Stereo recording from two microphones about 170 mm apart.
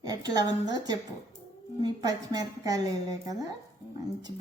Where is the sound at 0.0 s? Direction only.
25° right (ahead or behind).